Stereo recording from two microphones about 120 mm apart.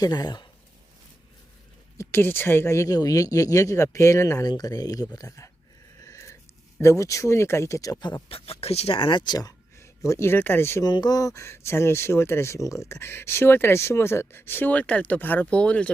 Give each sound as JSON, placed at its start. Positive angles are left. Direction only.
{"t": 0.0, "sound": "speech", "side_deg": 35}
{"t": 2.0, "sound": "speech", "side_deg": 20}
{"t": 6.0, "sound": "a sound", "side_deg": 25}
{"t": 6.7, "sound": "speech", "side_deg": 25}
{"t": 8.3, "sound": "speech", "side_deg": 55}
{"t": 10.8, "sound": "speech", "side_deg": 35}